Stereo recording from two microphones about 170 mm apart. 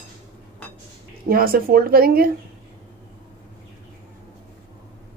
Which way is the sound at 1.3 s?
60° right (ahead or behind).